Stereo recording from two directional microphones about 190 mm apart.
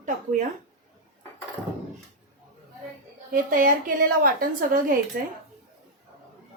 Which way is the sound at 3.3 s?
45° right (ahead or behind).